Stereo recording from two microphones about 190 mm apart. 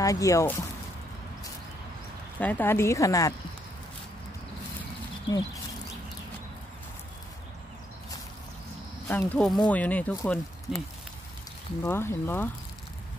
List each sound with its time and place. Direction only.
0.0 s speech: 15° left (ahead or behind)
2.3 s speech: 10° left (ahead or behind)
9.0 s speech: 10° left (ahead or behind)
11.8 s speech: 10° left (ahead or behind)